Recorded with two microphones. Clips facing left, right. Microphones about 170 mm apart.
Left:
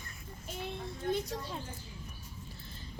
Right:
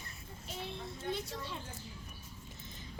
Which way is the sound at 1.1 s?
40° left (ahead or behind).